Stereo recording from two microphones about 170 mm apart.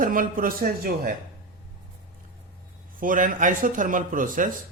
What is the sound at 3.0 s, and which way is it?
Speech, 50° right (ahead or behind).